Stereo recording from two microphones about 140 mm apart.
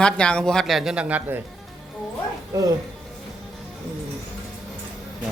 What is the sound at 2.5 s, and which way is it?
Speech, 25° right (ahead or behind).